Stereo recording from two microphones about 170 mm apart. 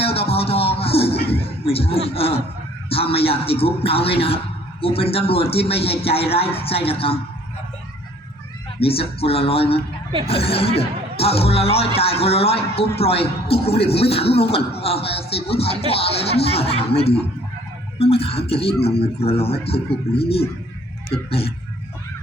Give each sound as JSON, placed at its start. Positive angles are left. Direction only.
{"t": 0.0, "sound": "music", "side_deg": 35}
{"t": 1.3, "sound": "a sound", "side_deg": 35}
{"t": 2.9, "sound": "speech", "side_deg": 35}
{"t": 8.8, "sound": "speech", "side_deg": 35}